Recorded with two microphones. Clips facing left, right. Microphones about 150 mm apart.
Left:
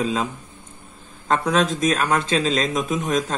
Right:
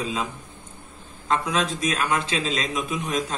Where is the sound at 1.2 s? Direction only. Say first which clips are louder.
Left 4 dB; 45° left (ahead or behind).